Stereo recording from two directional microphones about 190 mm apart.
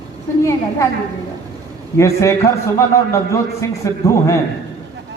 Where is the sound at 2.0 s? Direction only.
15° left (ahead or behind).